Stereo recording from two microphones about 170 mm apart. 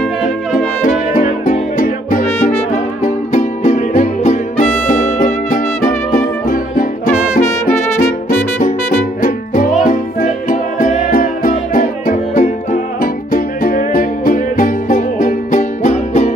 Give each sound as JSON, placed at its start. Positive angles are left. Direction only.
{"t": 0.8, "sound": "music", "side_deg": 50}
{"t": 9.2, "sound": "music", "side_deg": 50}